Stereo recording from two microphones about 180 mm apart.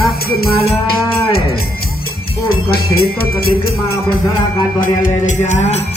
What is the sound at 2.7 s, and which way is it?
Speech, 55° left (ahead or behind).